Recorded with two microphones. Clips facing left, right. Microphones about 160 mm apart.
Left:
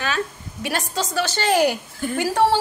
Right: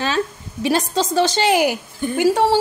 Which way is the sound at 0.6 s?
25° right (ahead or behind).